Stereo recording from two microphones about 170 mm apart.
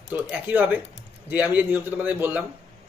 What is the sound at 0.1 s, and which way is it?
Speech, 10° right (ahead or behind).